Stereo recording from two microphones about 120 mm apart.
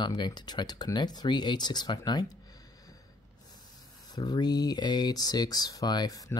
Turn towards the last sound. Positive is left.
turn(degrees=30)  # may be behind; listen again after turning